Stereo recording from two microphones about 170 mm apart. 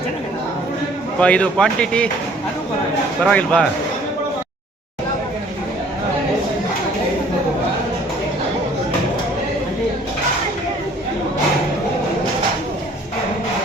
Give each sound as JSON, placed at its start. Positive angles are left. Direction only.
{"t": 1.2, "sound": "speech", "side_deg": 5}
{"t": 3.2, "sound": "speech", "side_deg": 5}